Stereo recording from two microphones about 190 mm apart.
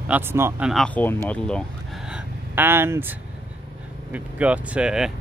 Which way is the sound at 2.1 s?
10° right (ahead or behind).